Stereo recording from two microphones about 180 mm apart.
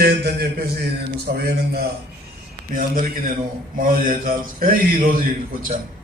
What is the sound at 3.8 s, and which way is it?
Mantra, 45° right (ahead or behind).